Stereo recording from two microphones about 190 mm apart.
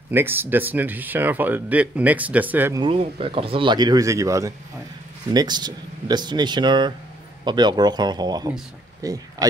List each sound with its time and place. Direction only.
0.1 s speech: 10° right (ahead or behind)
2.8 s speech: 30° right (ahead or behind)